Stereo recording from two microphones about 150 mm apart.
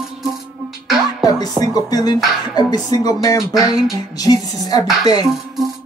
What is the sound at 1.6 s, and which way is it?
Music, 25° left (ahead or behind).